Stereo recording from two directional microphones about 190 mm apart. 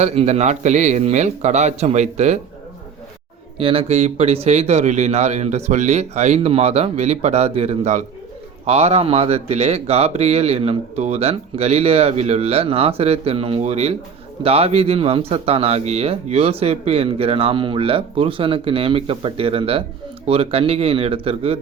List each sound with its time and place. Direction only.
0.0 s speech: 35° right (ahead or behind)
3.6 s speech: 30° right (ahead or behind)